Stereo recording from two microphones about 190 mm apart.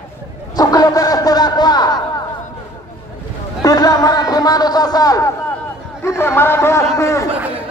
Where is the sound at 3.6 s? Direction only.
20° left (ahead or behind).